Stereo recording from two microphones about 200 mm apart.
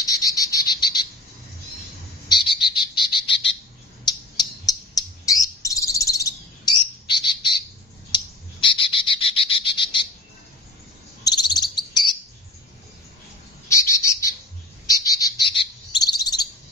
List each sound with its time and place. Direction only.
0.0 s frog: 15° left (ahead or behind)
2.2 s frog: 25° left (ahead or behind)
3.2 s bird: 25° left (ahead or behind)
8.1 s frog: 25° left (ahead or behind)
11.2 s bird: 20° left (ahead or behind)
13.7 s bird: 15° left (ahead or behind)